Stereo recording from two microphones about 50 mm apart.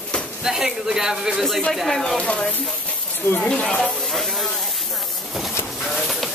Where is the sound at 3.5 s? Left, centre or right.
Centre.